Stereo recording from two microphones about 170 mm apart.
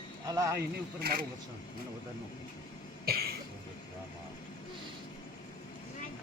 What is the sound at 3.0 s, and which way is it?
Cough, 65° right (ahead or behind).